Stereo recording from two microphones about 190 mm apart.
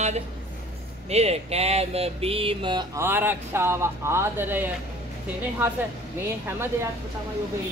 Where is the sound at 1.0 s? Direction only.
35° right (ahead or behind); by 4.6 s 10° right (ahead or behind).